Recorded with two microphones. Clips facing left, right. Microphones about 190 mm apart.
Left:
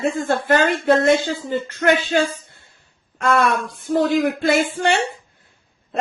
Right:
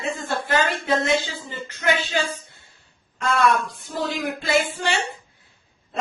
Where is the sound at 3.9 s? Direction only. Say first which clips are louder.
Left 10 dB; 50° left (ahead or behind).